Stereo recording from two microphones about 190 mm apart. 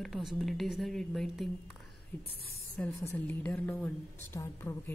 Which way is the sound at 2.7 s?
10° left (ahead or behind).